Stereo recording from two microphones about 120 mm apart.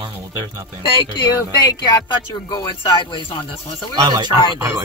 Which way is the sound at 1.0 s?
30° left (ahead or behind).